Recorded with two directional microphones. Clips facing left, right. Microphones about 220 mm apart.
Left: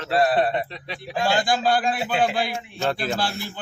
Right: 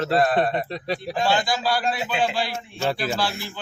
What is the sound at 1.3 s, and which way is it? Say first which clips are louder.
A man's voice: left 3 dB; 50° left (ahead or behind).